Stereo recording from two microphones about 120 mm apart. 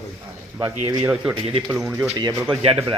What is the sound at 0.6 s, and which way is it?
Speech, 25° right (ahead or behind).